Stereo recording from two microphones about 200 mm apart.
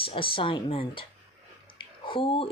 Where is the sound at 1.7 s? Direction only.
25° left (ahead or behind).